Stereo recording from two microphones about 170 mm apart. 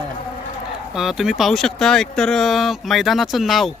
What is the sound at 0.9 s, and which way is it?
Speech, 5° right (ahead or behind).